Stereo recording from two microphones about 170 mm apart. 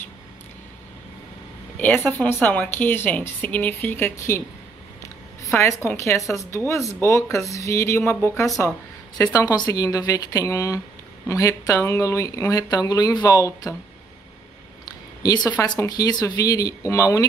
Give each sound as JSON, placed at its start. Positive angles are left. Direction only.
{"t": 1.8, "sound": "speech", "side_deg": 10}
{"t": 5.9, "sound": "speech", "side_deg": 15}
{"t": 15.2, "sound": "speech", "side_deg": 20}